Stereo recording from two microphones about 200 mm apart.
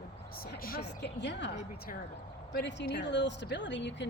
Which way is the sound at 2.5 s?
60° left (ahead or behind).